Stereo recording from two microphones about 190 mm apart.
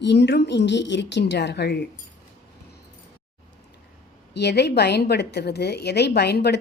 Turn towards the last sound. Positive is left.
turn(degrees=60)  # may be behind; listen again after turning